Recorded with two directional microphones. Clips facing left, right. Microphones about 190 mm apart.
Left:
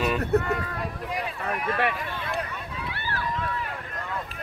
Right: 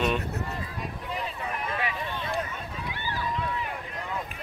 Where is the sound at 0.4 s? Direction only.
65° left (ahead or behind).